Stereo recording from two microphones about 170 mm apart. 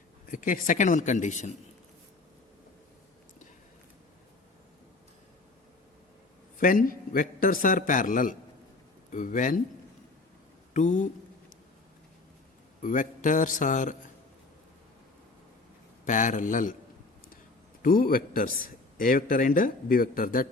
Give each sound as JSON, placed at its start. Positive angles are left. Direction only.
{"t": 0.3, "sound": "a man's voice", "side_deg": 50}
{"t": 6.6, "sound": "a man's voice", "side_deg": 55}
{"t": 10.8, "sound": "a sound", "side_deg": 45}
{"t": 12.8, "sound": "a man's voice", "side_deg": 50}
{"t": 16.0, "sound": "a man's voice", "side_deg": 50}
{"t": 17.8, "sound": "a man's voice", "side_deg": 60}